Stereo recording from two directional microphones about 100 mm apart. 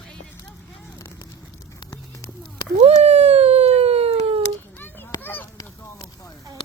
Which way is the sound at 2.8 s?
90° right.